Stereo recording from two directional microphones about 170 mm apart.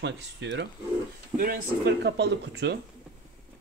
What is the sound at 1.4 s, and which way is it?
Speech, 65° right (ahead or behind).